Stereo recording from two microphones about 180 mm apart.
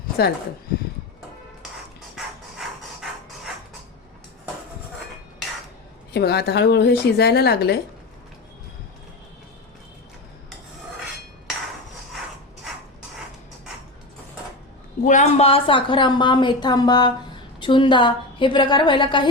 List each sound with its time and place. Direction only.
0.2 s speech: 65° left (ahead or behind)
2.1 s hammer: centre (ahead or behind)
6.1 s speech: 65° left (ahead or behind)
15.0 s speech: 40° left (ahead or behind)